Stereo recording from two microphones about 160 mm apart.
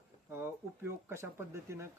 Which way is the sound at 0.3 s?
15° right (ahead or behind).